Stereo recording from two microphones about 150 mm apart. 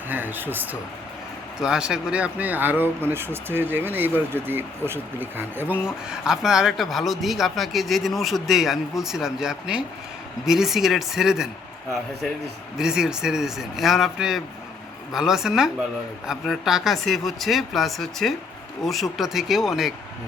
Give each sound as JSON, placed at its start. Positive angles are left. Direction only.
{"t": 0.1, "sound": "a man's voice", "side_deg": -10}
{"t": 12.7, "sound": "a man's voice", "side_deg": -5}